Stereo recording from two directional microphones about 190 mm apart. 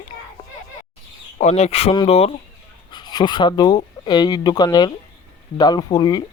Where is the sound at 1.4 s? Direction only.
35° left (ahead or behind); by 6.3 s 20° left (ahead or behind).